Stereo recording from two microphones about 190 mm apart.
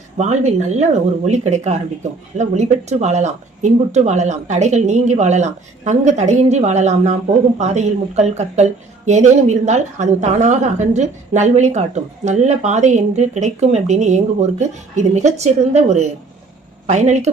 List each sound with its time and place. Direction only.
0.2 s speech: 35° right (ahead or behind)